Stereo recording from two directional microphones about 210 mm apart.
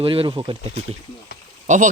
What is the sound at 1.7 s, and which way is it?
Speech, 35° right (ahead or behind).